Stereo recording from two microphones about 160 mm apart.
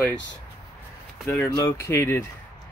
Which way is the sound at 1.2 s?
20° left (ahead or behind).